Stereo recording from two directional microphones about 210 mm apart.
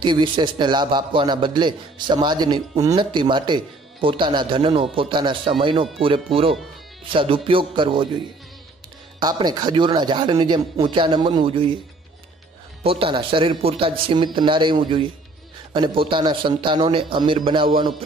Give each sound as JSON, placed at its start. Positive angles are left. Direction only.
{"t": 0.0, "sound": "a man's voice", "side_deg": -20}
{"t": 9.2, "sound": "a man's voice", "side_deg": -20}
{"t": 12.8, "sound": "a man's voice", "side_deg": -25}